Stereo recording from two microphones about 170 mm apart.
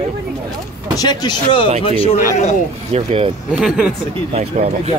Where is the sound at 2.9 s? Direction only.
35° right (ahead or behind).